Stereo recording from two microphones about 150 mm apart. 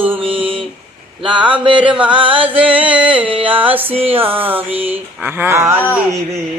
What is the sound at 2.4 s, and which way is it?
Mantra, 10° right (ahead or behind).